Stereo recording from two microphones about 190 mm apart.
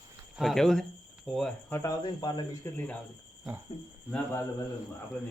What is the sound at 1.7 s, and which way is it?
Speech, 20° left (ahead or behind).